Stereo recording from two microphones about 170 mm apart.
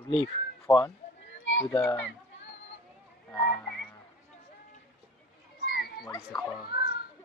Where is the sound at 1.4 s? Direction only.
90° left.